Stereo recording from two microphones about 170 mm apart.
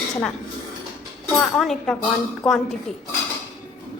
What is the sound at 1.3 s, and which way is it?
A woman's voice, 5° left (ahead or behind).